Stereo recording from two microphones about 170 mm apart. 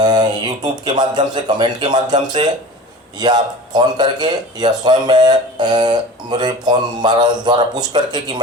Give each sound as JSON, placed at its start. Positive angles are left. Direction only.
{"t": 0.0, "sound": "speech", "side_deg": -25}